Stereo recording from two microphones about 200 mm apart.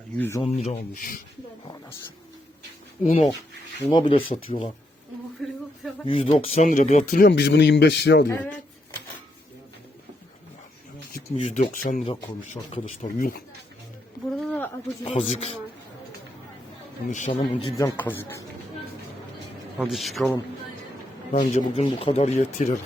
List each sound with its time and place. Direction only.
0.2 s speech: 15° left (ahead or behind)
0.4 s speech: 30° left (ahead or behind)
3.0 s speech: 40° left (ahead or behind)
3.8 s speech: 25° left (ahead or behind)
5.4 s a sound: centre (ahead or behind)
6.1 s speech: 25° left (ahead or behind); by 8.3 s 60° left (ahead or behind)
11.4 s speech: 35° left (ahead or behind)
14.4 s a sound: 10° left (ahead or behind)
15.1 s speech: 30° left (ahead or behind)
17.1 s speech: 40° left (ahead or behind)
17.3 s speech: 20° left (ahead or behind)
19.8 s a man's voice: centre (ahead or behind)
21.3 s speech: 35° left (ahead or behind)